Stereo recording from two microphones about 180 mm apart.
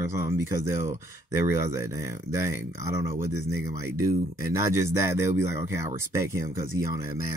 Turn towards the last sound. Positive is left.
turn(degrees=-15)  # may be behind; listen again after turning